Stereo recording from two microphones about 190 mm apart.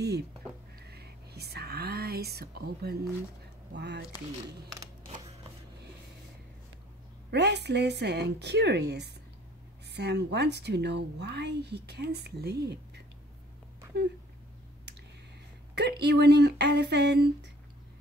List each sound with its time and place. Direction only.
0.7 s a woman's voice: 55° right (ahead or behind)
7.2 s a woman's voice: 60° right (ahead or behind)
15.7 s a woman's voice: 60° right (ahead or behind)